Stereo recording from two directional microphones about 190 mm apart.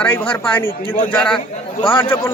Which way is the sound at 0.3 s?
10° left (ahead or behind).